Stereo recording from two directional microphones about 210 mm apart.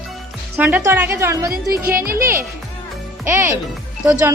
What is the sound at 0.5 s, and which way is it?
Speech, 10° right (ahead or behind).